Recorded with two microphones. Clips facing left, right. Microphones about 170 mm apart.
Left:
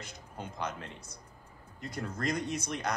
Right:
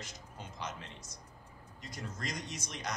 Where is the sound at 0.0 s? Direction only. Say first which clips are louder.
Left 5 dB; 55° left (ahead or behind).